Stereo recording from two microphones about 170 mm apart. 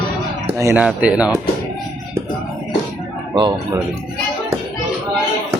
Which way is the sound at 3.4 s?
25° right (ahead or behind).